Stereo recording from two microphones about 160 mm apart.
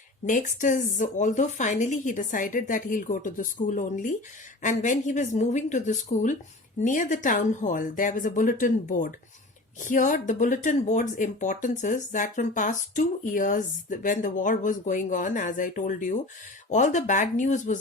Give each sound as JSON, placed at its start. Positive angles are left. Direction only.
{"t": 0.3, "sound": "speech", "side_deg": 55}